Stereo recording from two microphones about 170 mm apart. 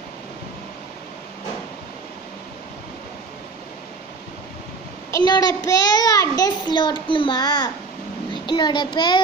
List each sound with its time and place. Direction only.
5.1 s a child's voice: 25° left (ahead or behind)
8.3 s child singing: 25° left (ahead or behind)